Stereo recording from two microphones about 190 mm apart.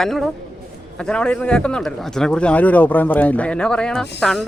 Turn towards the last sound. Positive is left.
turn(degrees=5)  # may be behind; listen again after turning